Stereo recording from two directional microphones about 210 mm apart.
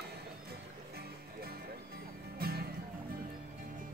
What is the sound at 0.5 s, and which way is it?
Music, 50° right (ahead or behind).